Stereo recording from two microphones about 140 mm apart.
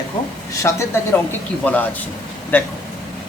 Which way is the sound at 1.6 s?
10° left (ahead or behind).